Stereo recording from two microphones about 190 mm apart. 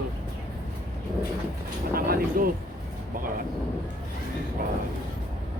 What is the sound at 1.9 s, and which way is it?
Speech, 50° right (ahead or behind).